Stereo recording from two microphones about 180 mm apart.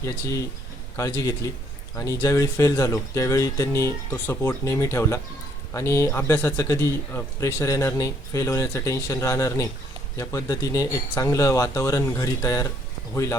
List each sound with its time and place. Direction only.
0.0 s a man's voice: 20° left (ahead or behind)